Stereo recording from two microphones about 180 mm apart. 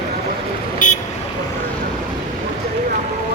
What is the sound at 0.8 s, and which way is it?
Vehicle, 45° left (ahead or behind).